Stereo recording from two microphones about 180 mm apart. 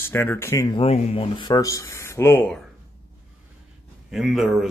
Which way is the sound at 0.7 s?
35° left (ahead or behind).